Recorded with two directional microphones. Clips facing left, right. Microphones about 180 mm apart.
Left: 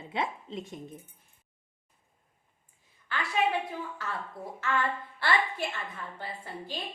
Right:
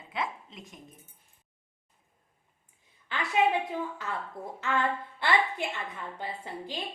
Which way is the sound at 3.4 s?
20° right (ahead or behind).